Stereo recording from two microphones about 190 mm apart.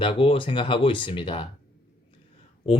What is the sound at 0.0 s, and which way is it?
Speech, 30° left (ahead or behind).